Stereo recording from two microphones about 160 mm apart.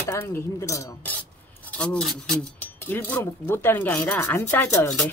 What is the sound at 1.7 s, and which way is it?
Filing, 5° left (ahead or behind).